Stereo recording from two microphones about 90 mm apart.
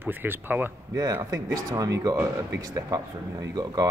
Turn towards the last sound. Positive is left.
turn(degrees=-45)  # may be behind; listen again after turning